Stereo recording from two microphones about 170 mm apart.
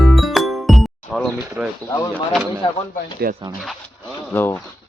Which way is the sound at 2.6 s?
30° left (ahead or behind).